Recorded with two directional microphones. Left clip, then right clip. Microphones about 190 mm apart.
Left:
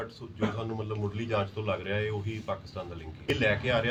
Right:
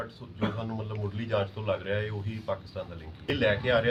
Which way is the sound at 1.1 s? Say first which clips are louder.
Right 2 dB; 5° left (ahead or behind).